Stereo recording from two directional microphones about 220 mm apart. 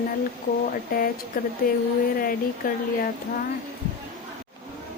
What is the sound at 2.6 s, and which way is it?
Speech, 40° left (ahead or behind).